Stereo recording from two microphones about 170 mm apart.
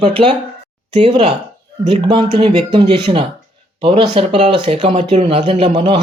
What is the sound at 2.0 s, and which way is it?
Speech, 30° right (ahead or behind).